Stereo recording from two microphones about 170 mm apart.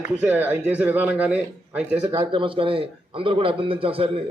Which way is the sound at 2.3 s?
30° right (ahead or behind).